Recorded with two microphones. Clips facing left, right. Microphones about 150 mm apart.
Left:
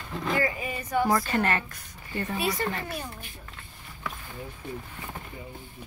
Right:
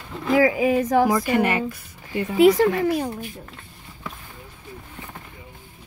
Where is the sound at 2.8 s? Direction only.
90° right.